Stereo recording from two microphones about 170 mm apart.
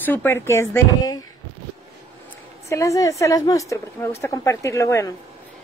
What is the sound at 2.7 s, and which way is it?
A woman's voice, 20° left (ahead or behind).